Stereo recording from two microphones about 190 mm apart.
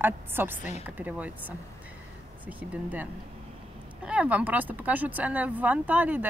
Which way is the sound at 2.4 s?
10° right (ahead or behind).